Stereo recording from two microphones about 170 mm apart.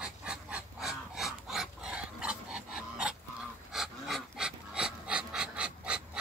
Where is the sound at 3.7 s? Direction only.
Centre (ahead or behind).